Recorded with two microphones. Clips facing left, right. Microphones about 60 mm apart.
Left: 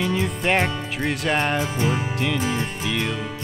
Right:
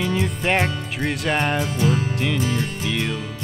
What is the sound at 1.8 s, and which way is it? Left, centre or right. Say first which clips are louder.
Music: right 2 dB; left.